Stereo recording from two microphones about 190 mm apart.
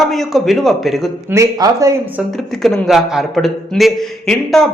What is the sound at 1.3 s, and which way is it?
Speech, 15° right (ahead or behind).